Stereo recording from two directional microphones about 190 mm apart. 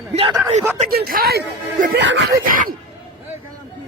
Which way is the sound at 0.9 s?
50° right (ahead or behind).